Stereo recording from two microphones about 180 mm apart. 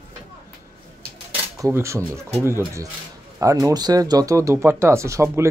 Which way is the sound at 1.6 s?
15° right (ahead or behind).